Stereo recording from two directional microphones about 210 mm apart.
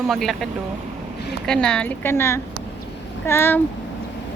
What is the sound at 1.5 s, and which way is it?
A woman's voice, 5° left (ahead or behind).